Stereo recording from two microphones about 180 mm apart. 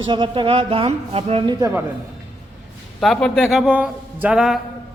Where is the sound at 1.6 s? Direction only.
10° right (ahead or behind).